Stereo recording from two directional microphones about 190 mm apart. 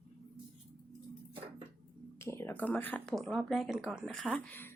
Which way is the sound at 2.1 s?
15° left (ahead or behind).